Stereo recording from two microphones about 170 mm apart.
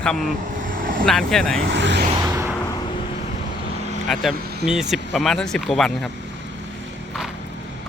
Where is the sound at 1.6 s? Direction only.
90° right.